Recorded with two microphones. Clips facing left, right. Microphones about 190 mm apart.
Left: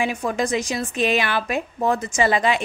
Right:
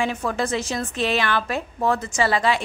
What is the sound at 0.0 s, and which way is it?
Speech, 15° left (ahead or behind).